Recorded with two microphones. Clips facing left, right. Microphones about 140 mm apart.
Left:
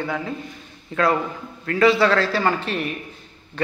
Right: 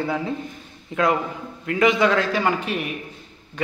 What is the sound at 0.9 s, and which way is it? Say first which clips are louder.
A man's voice: left 1 dB; 15° right (ahead or behind).